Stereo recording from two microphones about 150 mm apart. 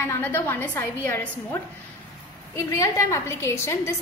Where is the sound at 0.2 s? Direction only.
10° left (ahead or behind).